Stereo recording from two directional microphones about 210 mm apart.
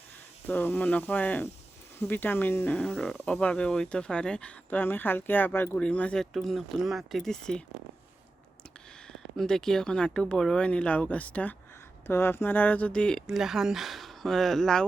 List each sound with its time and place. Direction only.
0.4 s speech: 10° left (ahead or behind)
9.0 s speech: centre (ahead or behind)